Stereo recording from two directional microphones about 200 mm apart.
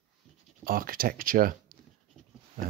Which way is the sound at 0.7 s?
45° right (ahead or behind).